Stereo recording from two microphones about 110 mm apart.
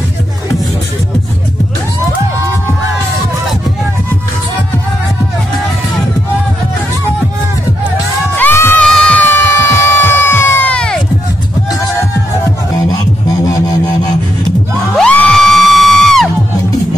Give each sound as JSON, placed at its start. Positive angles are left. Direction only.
{"t": 8.4, "sound": "music", "side_deg": 20}
{"t": 8.8, "sound": "music", "side_deg": 5}
{"t": 13.5, "sound": "a sound", "side_deg": 35}
{"t": 15.0, "sound": "music", "side_deg": 5}